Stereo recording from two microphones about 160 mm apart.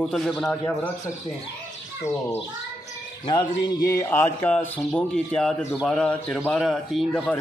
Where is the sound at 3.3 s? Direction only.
30° left (ahead or behind).